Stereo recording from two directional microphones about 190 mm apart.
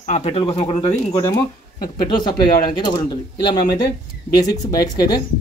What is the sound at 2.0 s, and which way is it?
Speech, 25° left (ahead or behind).